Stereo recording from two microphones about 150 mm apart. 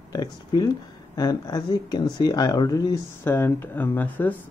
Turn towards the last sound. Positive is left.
turn(degrees=10)  # may be behind; listen again after turning